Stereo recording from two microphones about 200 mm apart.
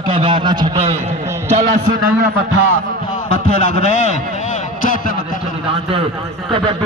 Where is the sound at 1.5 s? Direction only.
35° right (ahead or behind).